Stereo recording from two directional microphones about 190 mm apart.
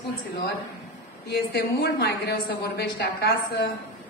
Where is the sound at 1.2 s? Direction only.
60° left (ahead or behind).